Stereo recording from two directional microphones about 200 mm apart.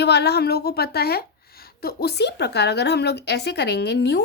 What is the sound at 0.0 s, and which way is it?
A woman's voice, 55° left (ahead or behind).